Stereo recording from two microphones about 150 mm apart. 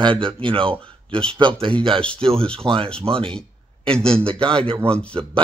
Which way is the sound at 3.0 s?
35° right (ahead or behind).